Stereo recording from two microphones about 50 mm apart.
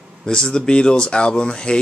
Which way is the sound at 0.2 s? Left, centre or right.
Centre.